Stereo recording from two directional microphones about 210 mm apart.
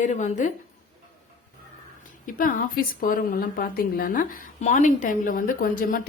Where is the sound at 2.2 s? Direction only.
40° left (ahead or behind).